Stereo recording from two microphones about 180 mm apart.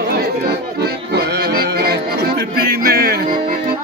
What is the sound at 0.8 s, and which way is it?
Music, 65° right (ahead or behind).